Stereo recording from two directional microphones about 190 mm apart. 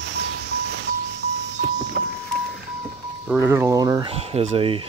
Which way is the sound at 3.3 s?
10° right (ahead or behind).